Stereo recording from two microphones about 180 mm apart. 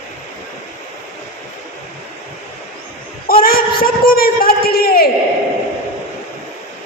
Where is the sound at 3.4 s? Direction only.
55° left (ahead or behind).